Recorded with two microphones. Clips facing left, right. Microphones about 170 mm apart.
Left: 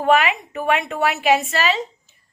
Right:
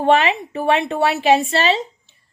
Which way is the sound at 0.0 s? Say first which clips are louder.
Right 2 dB; 30° right (ahead or behind).